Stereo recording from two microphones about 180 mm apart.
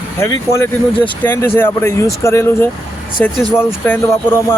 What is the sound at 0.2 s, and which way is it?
Speech, 15° left (ahead or behind).